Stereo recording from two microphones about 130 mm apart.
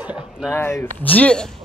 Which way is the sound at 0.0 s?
10° right (ahead or behind).